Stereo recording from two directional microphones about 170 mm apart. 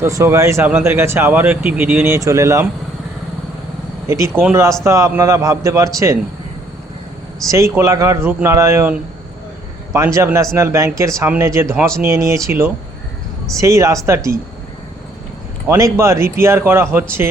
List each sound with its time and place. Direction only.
0.0 s speech: 15° right (ahead or behind)
4.1 s a man's voice: 15° right (ahead or behind)
7.4 s speech: 20° right (ahead or behind)
15.6 s speech: 15° right (ahead or behind)